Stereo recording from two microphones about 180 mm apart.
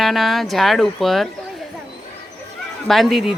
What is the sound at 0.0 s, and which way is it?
A woman's voice, centre (ahead or behind).